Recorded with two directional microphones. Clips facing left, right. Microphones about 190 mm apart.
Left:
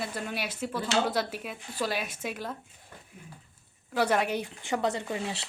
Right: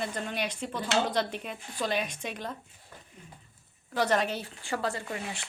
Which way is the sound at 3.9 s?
10° left (ahead or behind).